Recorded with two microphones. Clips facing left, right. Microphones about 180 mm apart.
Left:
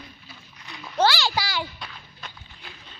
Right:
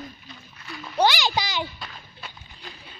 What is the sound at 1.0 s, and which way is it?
Speech, 15° right (ahead or behind).